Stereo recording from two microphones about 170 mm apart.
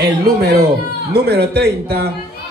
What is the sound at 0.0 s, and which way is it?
A man's voice, 70° right (ahead or behind).